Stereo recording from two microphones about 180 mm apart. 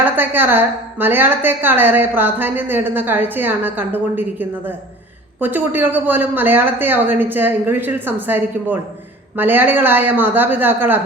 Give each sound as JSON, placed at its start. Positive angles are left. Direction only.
{"t": 0.0, "sound": "a woman's voice", "side_deg": -10}